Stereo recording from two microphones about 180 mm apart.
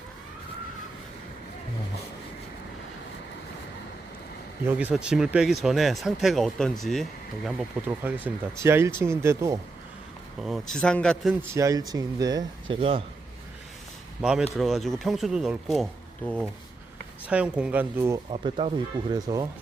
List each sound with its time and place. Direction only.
4.6 s speech: 10° right (ahead or behind)
10.4 s speech: centre (ahead or behind)
11.5 s speech: 20° right (ahead or behind)
14.2 s speech: 5° right (ahead or behind)
18.3 s speech: 35° right (ahead or behind)
19.1 s speech: 20° right (ahead or behind)